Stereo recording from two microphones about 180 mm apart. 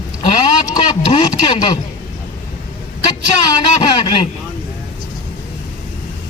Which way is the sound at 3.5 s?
25° left (ahead or behind).